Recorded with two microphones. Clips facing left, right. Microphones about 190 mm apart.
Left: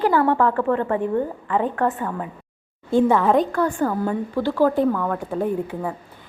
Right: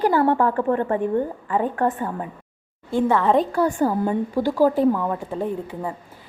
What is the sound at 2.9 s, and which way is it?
Speech, 15° left (ahead or behind).